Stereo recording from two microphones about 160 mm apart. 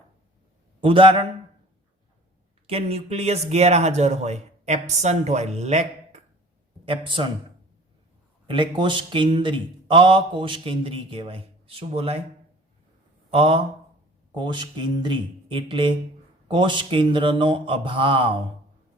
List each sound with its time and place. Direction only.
0.8 s a man's voice: 35° right (ahead or behind)
2.6 s speech: 40° right (ahead or behind)
6.8 s a man's voice: 30° right (ahead or behind)
8.4 s a man's voice: 30° right (ahead or behind)
13.3 s a man's voice: 35° right (ahead or behind)